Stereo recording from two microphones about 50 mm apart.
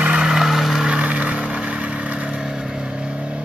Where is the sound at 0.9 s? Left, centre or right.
Right.